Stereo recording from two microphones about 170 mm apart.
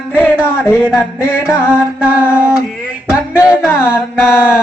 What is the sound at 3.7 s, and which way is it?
Mantra, 15° left (ahead or behind).